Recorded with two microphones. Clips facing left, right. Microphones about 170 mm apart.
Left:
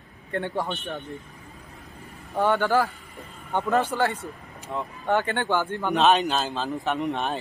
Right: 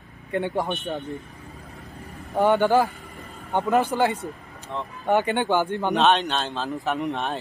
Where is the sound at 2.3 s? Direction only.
15° right (ahead or behind).